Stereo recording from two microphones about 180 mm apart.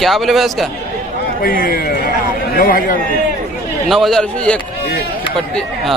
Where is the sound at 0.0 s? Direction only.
Centre (ahead or behind).